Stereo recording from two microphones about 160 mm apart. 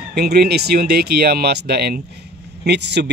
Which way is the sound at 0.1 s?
80° right.